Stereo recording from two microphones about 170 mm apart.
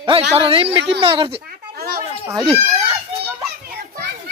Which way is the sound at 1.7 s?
60° right (ahead or behind).